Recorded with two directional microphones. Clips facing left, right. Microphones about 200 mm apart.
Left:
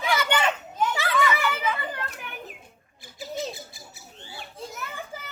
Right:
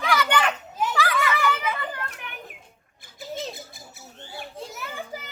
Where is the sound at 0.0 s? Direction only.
25° left (ahead or behind).